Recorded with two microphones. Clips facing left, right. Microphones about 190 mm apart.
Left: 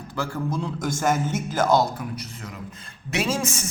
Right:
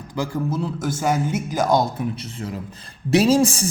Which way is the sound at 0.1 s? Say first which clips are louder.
Right 3 dB; 10° right (ahead or behind).